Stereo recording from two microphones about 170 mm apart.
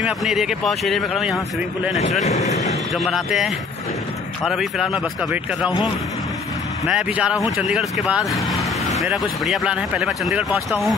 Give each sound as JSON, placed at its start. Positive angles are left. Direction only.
{"t": 0.0, "sound": "speech", "side_deg": 0}
{"t": 2.2, "sound": "speech", "side_deg": 40}
{"t": 2.9, "sound": "speech", "side_deg": 0}
{"t": 6.9, "sound": "speech", "side_deg": -5}